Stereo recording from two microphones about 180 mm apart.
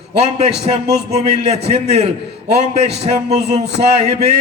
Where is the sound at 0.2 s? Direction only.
35° right (ahead or behind).